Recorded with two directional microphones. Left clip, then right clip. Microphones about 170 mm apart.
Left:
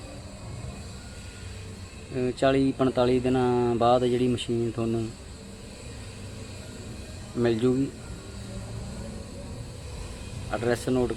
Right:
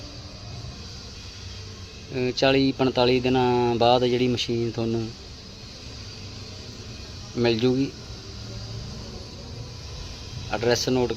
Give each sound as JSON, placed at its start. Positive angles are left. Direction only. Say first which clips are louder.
{"t": 2.4, "sound": "speech", "louder": "right 2 dB", "side_deg": -10}
{"t": 7.4, "sound": "speech", "louder": "right 3 dB", "side_deg": -15}
{"t": 10.5, "sound": "speech", "louder": "right 4 dB", "side_deg": -15}